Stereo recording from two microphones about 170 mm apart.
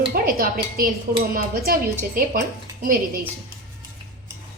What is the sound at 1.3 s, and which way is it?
A woman's voice, 55° right (ahead or behind).